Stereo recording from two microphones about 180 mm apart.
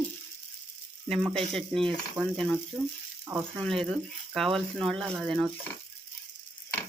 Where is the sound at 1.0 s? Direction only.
Centre (ahead or behind).